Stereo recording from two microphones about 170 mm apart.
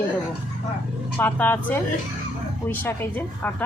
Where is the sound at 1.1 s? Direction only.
10° left (ahead or behind).